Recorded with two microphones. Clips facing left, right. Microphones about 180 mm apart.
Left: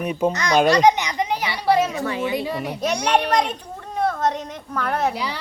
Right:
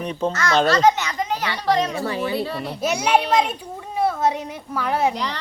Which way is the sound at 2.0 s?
35° right (ahead or behind).